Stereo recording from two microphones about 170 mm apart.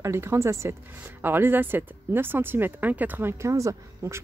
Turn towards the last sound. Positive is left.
turn(degrees=-20)  # may be behind; listen again after turning